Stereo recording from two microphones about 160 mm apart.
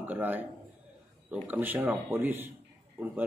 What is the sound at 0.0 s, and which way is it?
A man's voice, 10° right (ahead or behind).